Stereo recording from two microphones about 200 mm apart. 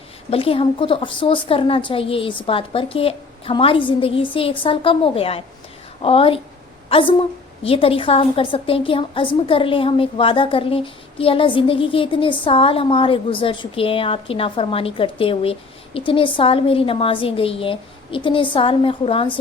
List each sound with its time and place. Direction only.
0.3 s a woman's voice: 30° left (ahead or behind)